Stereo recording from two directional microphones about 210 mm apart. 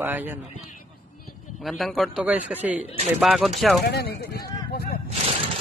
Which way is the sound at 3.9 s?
50° left (ahead or behind).